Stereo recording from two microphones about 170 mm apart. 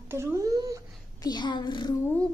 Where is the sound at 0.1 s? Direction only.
15° right (ahead or behind).